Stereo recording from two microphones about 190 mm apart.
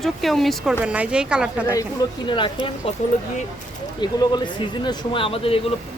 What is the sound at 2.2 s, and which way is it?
Speech, 25° left (ahead or behind).